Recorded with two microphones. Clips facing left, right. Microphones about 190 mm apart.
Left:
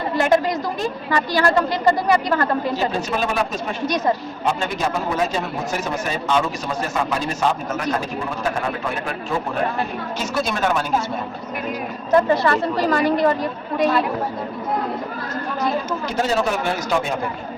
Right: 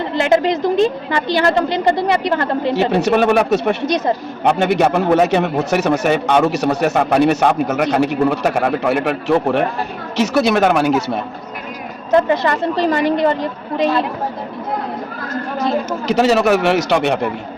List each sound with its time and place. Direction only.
0.2 s a woman's voice: 25° right (ahead or behind)
2.7 s a man's voice: 70° right (ahead or behind)
3.8 s a woman's voice: 25° right (ahead or behind)
4.4 s a man's voice: 65° right (ahead or behind)
12.3 s a woman's voice: 20° right (ahead or behind)
16.0 s a man's voice: 80° right